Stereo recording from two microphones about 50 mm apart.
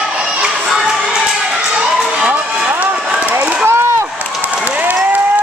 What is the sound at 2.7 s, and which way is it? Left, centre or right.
Run, right.